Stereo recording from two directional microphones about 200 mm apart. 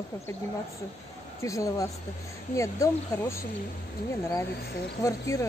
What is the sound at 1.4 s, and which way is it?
Speech, 15° left (ahead or behind).